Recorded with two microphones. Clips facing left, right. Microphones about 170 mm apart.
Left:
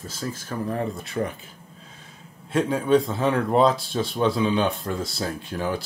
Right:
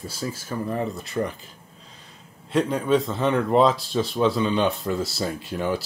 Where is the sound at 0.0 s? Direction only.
10° right (ahead or behind).